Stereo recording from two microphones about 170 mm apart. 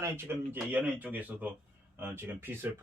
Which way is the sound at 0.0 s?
15° right (ahead or behind).